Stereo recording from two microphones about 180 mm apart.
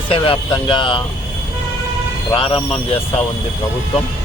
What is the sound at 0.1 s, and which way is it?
Speech, 30° left (ahead or behind).